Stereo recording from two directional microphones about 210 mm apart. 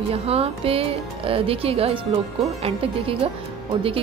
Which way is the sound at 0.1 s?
30° right (ahead or behind).